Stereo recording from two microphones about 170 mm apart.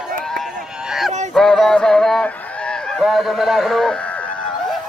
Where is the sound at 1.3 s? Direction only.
Centre (ahead or behind).